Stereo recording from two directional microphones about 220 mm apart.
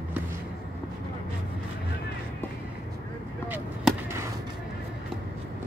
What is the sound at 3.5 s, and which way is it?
Chop, 10° right (ahead or behind).